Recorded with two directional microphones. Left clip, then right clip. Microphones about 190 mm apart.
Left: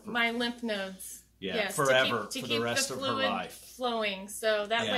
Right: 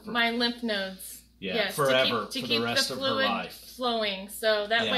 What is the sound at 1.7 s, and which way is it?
Speech, 20° left (ahead or behind).